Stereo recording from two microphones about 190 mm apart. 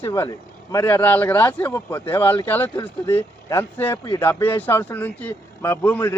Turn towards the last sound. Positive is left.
turn(degrees=10)  # may be behind; listen again after turning